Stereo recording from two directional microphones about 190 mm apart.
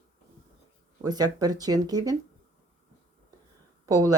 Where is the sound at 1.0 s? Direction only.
20° right (ahead or behind).